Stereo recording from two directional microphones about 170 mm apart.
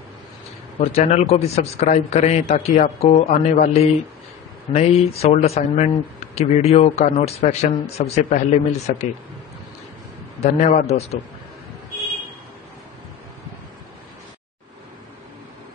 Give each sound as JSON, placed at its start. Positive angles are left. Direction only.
{"t": 0.7, "sound": "speech", "side_deg": 40}
{"t": 10.4, "sound": "speech", "side_deg": 40}